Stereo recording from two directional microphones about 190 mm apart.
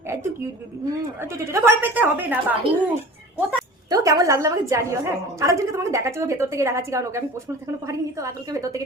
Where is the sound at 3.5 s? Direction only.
15° right (ahead or behind).